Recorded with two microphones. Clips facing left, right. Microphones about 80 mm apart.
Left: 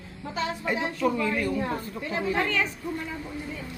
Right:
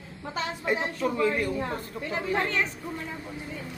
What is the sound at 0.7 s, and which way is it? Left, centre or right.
Speech, right.